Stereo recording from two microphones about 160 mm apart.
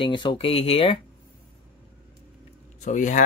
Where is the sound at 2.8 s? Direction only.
50° left (ahead or behind).